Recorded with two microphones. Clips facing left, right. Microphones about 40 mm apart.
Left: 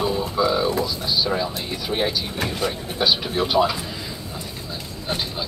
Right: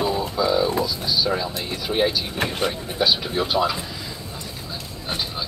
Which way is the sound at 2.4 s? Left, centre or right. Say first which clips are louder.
Right 2 dB; right.